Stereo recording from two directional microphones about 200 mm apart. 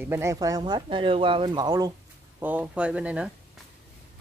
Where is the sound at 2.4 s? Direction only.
10° right (ahead or behind).